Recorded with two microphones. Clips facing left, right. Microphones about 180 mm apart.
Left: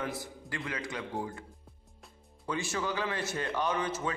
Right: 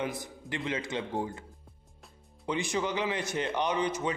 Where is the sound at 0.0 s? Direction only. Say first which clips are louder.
Right 2 dB; 20° right (ahead or behind).